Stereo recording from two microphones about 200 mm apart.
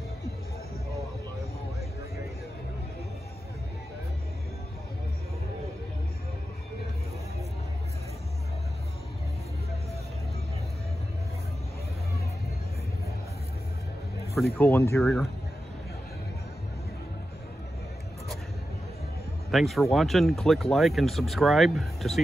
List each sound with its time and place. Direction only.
14.3 s speech: centre (ahead or behind)
14.7 s speech: 10° left (ahead or behind)
19.5 s speech: centre (ahead or behind)